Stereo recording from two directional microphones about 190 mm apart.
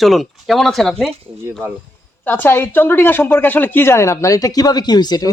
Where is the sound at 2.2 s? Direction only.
10° left (ahead or behind).